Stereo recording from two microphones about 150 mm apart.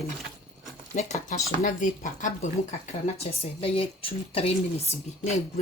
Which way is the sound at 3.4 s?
35° left (ahead or behind).